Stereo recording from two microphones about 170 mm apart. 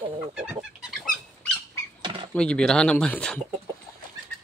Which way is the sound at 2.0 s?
30° right (ahead or behind).